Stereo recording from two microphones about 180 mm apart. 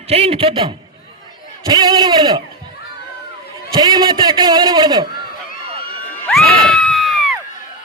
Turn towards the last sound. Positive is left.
turn(degrees=0)  # may be behind; listen again after turning